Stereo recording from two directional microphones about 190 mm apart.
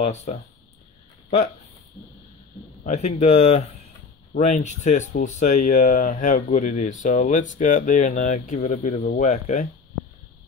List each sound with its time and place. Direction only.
0.0 s speech: 35° left (ahead or behind)
2.8 s speech: 35° left (ahead or behind)